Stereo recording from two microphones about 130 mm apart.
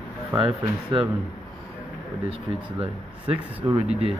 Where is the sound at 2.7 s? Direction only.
50° right (ahead or behind).